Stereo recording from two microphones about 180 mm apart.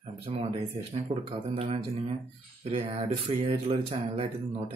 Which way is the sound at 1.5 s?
35° right (ahead or behind).